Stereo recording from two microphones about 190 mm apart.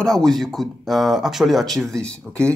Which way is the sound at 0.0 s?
Centre (ahead or behind).